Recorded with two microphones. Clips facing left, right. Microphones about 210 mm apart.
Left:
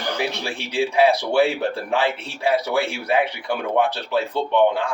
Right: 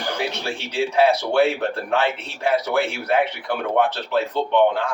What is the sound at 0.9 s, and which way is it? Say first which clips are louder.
A man's voice: even; 10° left (ahead or behind).